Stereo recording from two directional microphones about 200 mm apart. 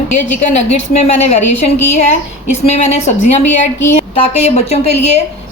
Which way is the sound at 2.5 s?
35° left (ahead or behind).